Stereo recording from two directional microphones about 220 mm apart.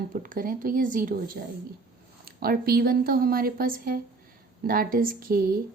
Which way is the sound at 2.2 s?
45° right (ahead or behind).